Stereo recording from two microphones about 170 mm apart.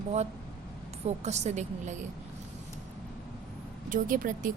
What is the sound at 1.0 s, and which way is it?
Speech, 40° right (ahead or behind).